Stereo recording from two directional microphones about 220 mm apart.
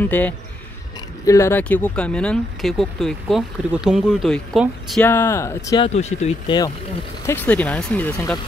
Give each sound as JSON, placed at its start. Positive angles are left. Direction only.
{"t": 0.0, "sound": "speech", "side_deg": 10}
{"t": 5.9, "sound": "speech", "side_deg": 30}
{"t": 7.2, "sound": "speech", "side_deg": 5}